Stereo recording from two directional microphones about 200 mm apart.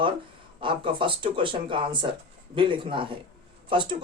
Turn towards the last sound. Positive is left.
turn(degrees=-25)  # may be behind; listen again after turning